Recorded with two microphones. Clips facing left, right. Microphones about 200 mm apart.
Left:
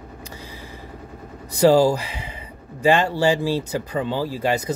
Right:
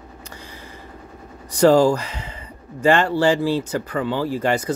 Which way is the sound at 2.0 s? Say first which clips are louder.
Even; 10° left (ahead or behind).